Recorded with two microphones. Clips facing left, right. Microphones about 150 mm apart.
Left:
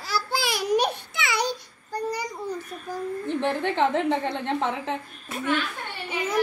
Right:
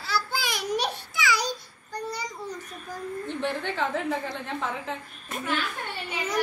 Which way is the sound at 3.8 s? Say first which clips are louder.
Left 6 dB; 25° left (ahead or behind).